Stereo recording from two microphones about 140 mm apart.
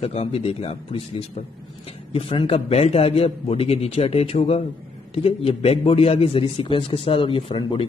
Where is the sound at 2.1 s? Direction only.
45° left (ahead or behind).